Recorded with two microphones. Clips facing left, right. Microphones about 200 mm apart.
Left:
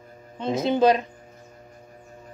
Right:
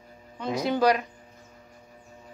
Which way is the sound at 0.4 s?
25° left (ahead or behind).